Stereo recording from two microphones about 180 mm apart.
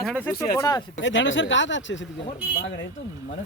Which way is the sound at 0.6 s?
20° left (ahead or behind).